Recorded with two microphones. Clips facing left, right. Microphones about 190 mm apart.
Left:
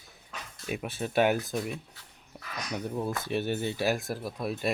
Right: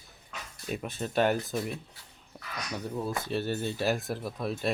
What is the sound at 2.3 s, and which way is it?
Speech, 15° left (ahead or behind).